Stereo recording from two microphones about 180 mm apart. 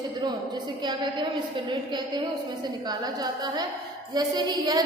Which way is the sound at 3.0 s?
20° right (ahead or behind).